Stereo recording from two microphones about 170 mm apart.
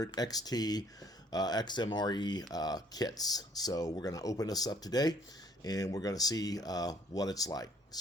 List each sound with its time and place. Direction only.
0.0 s speech: 20° left (ahead or behind)